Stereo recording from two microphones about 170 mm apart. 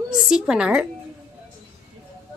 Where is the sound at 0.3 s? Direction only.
5° right (ahead or behind).